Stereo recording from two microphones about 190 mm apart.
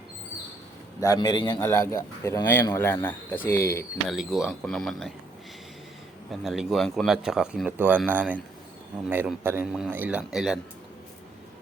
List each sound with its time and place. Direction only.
0.9 s a man's voice: 20° left (ahead or behind)
1.6 s speech: 15° left (ahead or behind)
4.1 s speech: centre (ahead or behind)
6.4 s speech: centre (ahead or behind)